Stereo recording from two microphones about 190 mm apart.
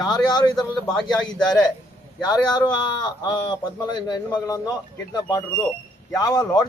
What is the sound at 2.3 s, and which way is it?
Speech, 20° left (ahead or behind).